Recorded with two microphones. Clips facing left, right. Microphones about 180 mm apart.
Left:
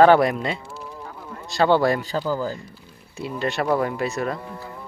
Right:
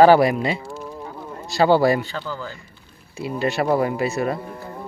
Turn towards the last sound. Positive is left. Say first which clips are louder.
# right 3 dB
turn(degrees=-5)  # may be behind; listen again after turning